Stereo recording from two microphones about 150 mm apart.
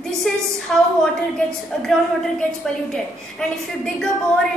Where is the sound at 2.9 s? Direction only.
5° left (ahead or behind).